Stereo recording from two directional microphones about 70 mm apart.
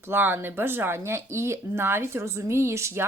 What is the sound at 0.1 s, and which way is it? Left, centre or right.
Speech, right.